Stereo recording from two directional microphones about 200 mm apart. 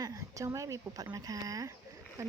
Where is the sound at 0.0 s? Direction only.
15° right (ahead or behind).